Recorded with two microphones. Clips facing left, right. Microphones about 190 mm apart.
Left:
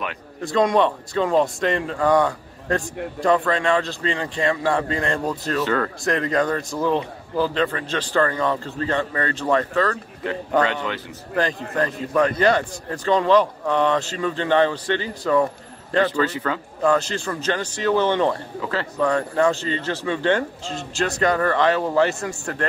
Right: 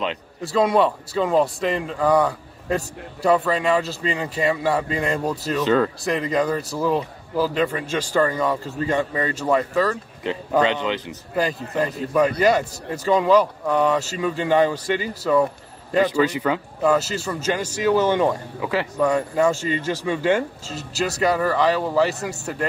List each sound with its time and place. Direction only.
0.4 s a man's voice: 5° right (ahead or behind)
5.6 s speech: 20° right (ahead or behind)
6.0 s a man's voice: centre (ahead or behind); by 11.1 s 20° right (ahead or behind)
11.3 s a man's voice: 10° right (ahead or behind)